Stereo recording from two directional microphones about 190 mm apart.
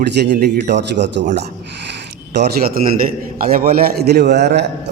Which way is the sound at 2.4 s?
60° right (ahead or behind).